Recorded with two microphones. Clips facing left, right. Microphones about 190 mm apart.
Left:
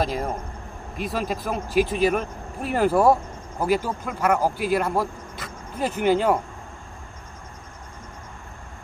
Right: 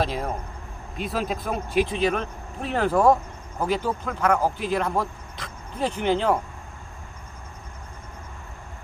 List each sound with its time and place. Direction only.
0.0 s speech: centre (ahead or behind)